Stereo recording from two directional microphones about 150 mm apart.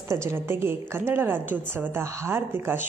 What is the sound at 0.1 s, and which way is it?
A woman's voice, 15° right (ahead or behind).